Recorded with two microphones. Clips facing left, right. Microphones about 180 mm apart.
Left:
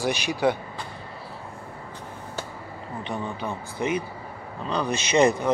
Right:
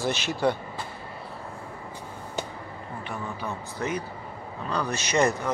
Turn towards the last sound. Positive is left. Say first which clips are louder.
# left 4 dB
turn(degrees=15)  # may be behind; listen again after turning